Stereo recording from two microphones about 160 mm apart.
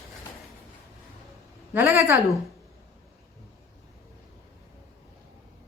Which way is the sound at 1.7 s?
15° right (ahead or behind).